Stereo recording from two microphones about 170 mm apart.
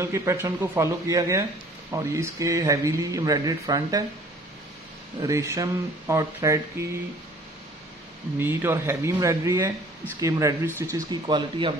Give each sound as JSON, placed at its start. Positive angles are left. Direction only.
{"t": 0.0, "sound": "speech", "side_deg": -15}
{"t": 5.2, "sound": "speech", "side_deg": -20}
{"t": 8.4, "sound": "speech", "side_deg": -15}